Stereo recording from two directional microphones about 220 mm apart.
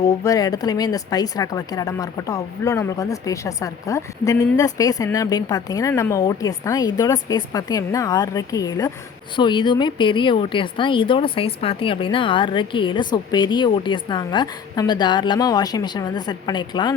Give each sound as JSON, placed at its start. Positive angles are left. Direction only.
{"t": 0.0, "sound": "a woman's voice", "side_deg": 15}